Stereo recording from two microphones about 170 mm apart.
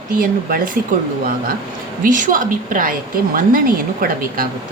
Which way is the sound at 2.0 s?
50° right (ahead or behind).